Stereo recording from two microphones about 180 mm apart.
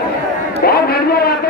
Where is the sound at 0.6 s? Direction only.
60° left (ahead or behind).